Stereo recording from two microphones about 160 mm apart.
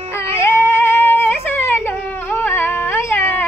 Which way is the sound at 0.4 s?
15° left (ahead or behind).